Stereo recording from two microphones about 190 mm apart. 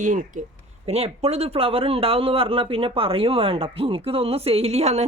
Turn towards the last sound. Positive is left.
turn(degrees=-35)  # may be behind; listen again after turning